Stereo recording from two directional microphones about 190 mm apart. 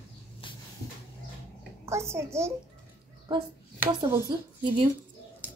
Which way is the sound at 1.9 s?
15° right (ahead or behind).